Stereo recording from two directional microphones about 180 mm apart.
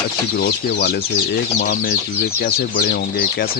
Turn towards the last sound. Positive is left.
turn(degrees=55)  # may be behind; listen again after turning